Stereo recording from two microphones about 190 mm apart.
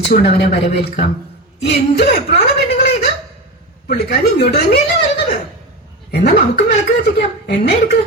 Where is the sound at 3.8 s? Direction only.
55° left (ahead or behind).